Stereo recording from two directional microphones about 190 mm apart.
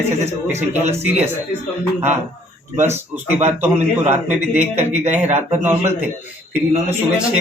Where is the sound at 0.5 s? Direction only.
10° right (ahead or behind).